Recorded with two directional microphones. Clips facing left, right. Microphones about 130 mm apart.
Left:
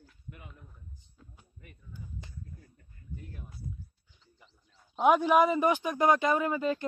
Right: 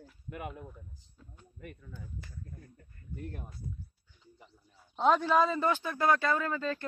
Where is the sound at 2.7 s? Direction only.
55° right (ahead or behind).